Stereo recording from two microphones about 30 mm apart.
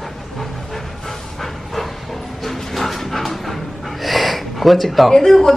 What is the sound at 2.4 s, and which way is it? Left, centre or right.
Dog, centre.